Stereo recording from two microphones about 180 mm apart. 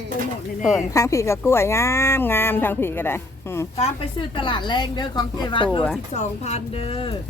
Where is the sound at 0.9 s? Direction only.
15° left (ahead or behind).